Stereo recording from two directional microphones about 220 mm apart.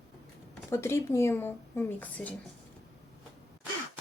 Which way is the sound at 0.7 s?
10° left (ahead or behind).